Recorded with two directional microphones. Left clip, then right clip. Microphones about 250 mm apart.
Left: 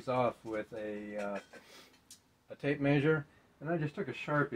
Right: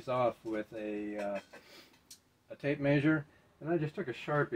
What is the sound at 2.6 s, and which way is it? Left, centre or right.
Speech, centre.